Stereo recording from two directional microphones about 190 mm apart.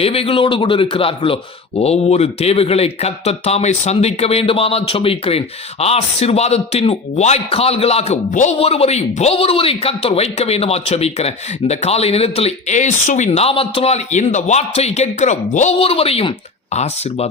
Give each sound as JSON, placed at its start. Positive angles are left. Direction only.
{"t": 0.0, "sound": "a man's voice", "side_deg": 30}